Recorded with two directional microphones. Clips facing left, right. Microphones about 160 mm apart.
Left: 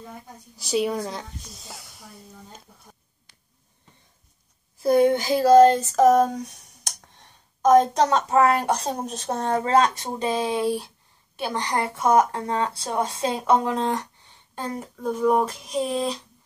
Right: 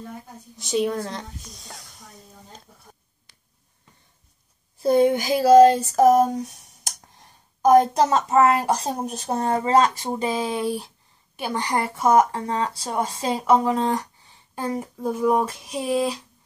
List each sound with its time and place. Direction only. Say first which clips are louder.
0.6 s a woman's voice: right 1 dB; centre (ahead or behind)
4.8 s speech: even; 25° right (ahead or behind)
5.1 s a woman's voice: right 1 dB; 15° right (ahead or behind)
15.0 s a woman's voice: even; 5° right (ahead or behind)